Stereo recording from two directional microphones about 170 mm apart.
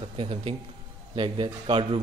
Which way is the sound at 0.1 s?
35° right (ahead or behind).